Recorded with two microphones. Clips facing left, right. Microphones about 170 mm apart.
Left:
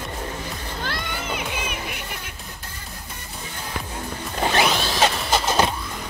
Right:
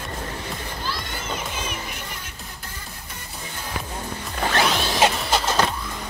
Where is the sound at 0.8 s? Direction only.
60° left (ahead or behind).